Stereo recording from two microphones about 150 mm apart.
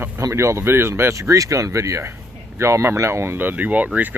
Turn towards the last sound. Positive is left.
turn(degrees=-10)  # may be behind; listen again after turning